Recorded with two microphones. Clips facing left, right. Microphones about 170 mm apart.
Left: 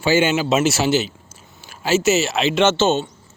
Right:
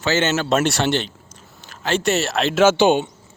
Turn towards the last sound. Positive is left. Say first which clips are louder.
# right 2 dB
turn(degrees=-15)  # may be behind; listen again after turning